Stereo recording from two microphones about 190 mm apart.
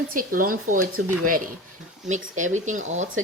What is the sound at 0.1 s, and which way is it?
Speech, 45° right (ahead or behind).